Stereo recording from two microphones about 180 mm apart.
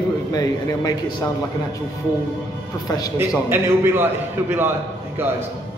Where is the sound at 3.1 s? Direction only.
15° right (ahead or behind).